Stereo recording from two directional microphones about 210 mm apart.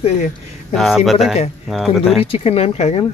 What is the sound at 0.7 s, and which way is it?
Speech, centre (ahead or behind).